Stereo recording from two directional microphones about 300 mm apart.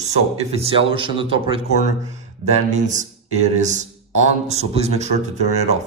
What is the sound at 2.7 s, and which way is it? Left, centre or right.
A man's voice, right.